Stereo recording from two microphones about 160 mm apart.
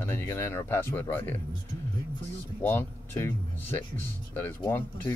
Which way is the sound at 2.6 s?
15° left (ahead or behind).